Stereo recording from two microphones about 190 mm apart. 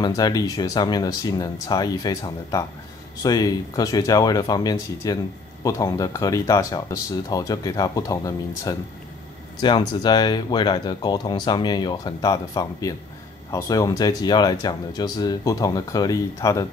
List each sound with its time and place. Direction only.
0.0 s speech: 20° left (ahead or behind)